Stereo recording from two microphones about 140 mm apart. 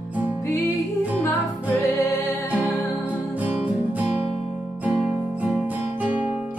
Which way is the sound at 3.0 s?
10° right (ahead or behind).